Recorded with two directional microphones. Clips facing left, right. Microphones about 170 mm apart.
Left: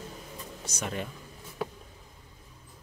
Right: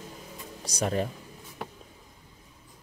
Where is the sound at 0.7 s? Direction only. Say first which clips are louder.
Right 7 dB; 35° right (ahead or behind).